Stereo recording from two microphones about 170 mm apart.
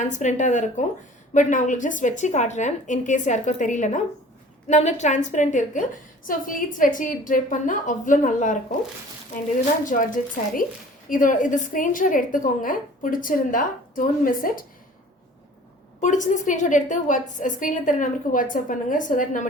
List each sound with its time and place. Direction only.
0.0 s a woman's voice: 45° left (ahead or behind)
9.8 s a woman's voice: 50° left (ahead or behind)
16.0 s a woman's voice: 45° left (ahead or behind)